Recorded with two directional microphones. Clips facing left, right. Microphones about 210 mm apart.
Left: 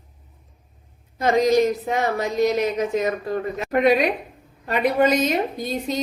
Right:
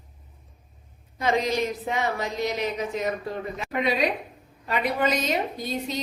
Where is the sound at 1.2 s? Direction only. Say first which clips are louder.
Left 7 dB; 45° left (ahead or behind).